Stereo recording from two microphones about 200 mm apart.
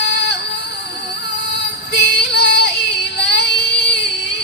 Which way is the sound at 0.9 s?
60° left (ahead or behind).